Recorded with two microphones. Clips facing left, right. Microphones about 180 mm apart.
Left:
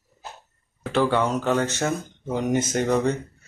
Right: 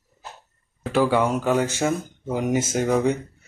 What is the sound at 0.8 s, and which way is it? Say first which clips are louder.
Speech: right 2 dB; 10° right (ahead or behind).